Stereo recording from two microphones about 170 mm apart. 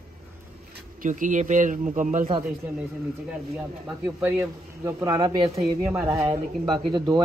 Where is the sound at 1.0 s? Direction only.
50° right (ahead or behind).